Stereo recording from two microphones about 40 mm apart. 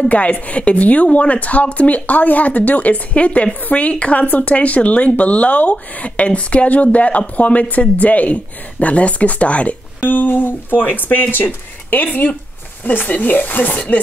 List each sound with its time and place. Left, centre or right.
0.1 s speech: left
10.0 s speech: left